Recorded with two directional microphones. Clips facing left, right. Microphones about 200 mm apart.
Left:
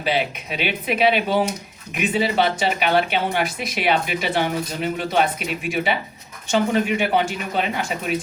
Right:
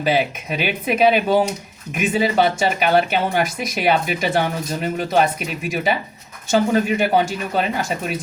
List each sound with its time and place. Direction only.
0.0 s speech: 45° right (ahead or behind)